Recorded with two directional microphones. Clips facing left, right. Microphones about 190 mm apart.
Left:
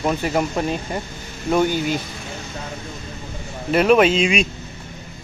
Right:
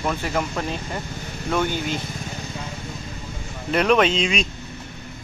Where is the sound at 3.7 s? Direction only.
5° left (ahead or behind).